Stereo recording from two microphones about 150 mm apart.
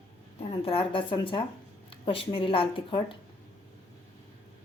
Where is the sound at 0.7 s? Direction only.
35° left (ahead or behind).